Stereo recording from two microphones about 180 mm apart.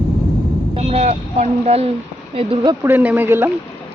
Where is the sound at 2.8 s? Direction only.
10° right (ahead or behind).